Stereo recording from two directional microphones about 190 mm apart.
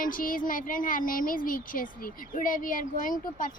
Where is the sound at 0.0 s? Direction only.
45° left (ahead or behind).